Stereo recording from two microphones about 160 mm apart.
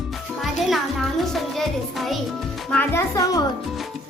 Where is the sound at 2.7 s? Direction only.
10° left (ahead or behind).